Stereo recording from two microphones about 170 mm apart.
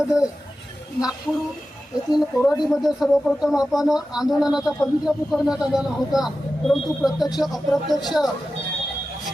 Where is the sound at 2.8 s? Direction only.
Centre (ahead or behind).